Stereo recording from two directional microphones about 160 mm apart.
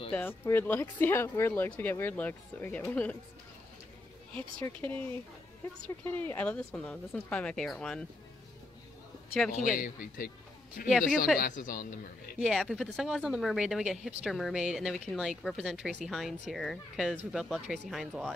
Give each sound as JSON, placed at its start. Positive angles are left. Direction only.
{"t": 0.1, "sound": "speech", "side_deg": 15}
{"t": 4.8, "sound": "speech", "side_deg": 10}
{"t": 6.0, "sound": "speech", "side_deg": 10}
{"t": 9.5, "sound": "a woman's voice", "side_deg": 55}
{"t": 10.9, "sound": "speech", "side_deg": -5}
{"t": 11.3, "sound": "a woman's voice", "side_deg": 60}
{"t": 12.4, "sound": "speech", "side_deg": 0}